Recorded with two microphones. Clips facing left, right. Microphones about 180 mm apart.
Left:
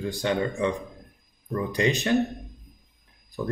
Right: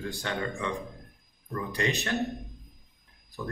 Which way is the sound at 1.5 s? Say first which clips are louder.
Left 5 dB; 15° left (ahead or behind).